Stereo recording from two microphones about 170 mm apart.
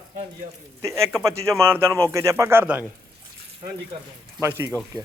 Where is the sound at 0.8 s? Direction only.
15° right (ahead or behind).